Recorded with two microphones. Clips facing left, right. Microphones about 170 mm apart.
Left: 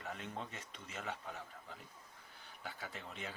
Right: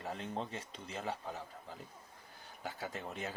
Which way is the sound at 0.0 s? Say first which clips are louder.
Right 5 dB; 30° right (ahead or behind).